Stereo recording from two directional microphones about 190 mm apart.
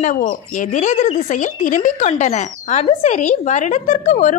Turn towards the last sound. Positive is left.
turn(degrees=40)  # may be behind; listen again after turning